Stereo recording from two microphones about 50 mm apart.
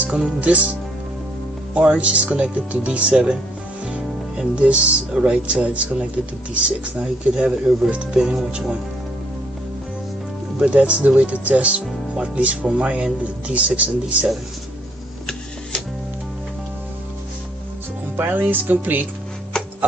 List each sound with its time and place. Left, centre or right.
0.0 s speech: right
1.7 s speech: right
10.6 s speech: right
18.1 s speech: right